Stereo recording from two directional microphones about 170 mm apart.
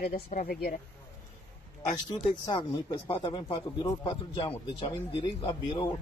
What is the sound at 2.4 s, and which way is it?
A man's voice, 25° left (ahead or behind).